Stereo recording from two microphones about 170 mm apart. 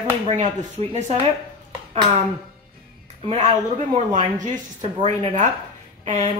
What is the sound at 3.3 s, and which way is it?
Speech, 45° right (ahead or behind).